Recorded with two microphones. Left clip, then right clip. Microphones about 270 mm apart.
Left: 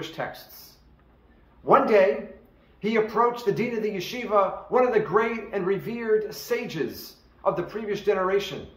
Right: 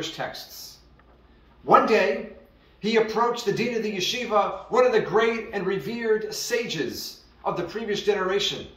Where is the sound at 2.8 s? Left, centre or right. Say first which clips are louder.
Right 1 dB; centre.